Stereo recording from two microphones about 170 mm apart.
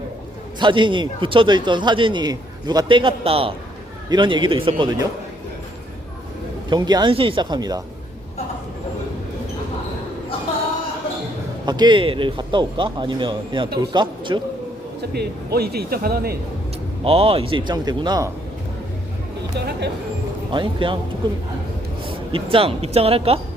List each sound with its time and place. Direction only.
0.6 s a man's voice: 30° right (ahead or behind)
6.7 s a man's voice: 25° right (ahead or behind)
11.6 s a man's voice: 25° right (ahead or behind)
15.1 s speech: 70° right (ahead or behind)
17.0 s a man's voice: 35° right (ahead or behind)
19.5 s speech: 80° right
20.5 s a man's voice: 30° right (ahead or behind)